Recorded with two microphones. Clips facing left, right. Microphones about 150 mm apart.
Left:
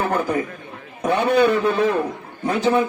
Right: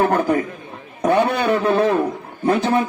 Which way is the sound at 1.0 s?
40° right (ahead or behind).